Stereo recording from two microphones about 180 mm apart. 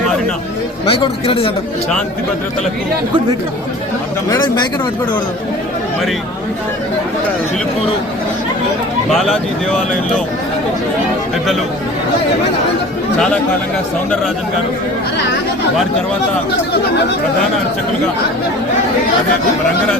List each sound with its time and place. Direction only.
0.9 s speech: 30° left (ahead or behind)
4.3 s speech: 25° left (ahead or behind)
9.0 s speech: centre (ahead or behind)
13.1 s speech: 5° left (ahead or behind)